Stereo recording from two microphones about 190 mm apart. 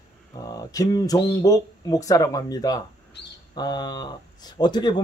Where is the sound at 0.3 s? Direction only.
20° left (ahead or behind).